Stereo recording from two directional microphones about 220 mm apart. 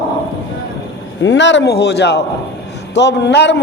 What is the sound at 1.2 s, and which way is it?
A man's voice, 55° left (ahead or behind).